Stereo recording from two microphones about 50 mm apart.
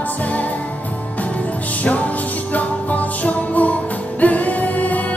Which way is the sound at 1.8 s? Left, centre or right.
Left.